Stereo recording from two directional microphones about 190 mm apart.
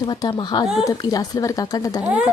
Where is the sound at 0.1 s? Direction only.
20° left (ahead or behind).